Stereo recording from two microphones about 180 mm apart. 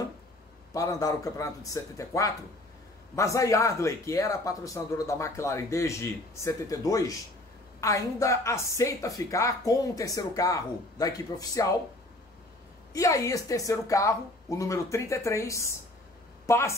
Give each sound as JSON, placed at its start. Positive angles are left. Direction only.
{"t": 0.7, "sound": "a woman's voice", "side_deg": 20}
{"t": 12.9, "sound": "a woman's voice", "side_deg": 20}